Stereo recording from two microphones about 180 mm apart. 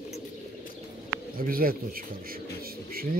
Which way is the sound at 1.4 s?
55° right (ahead or behind).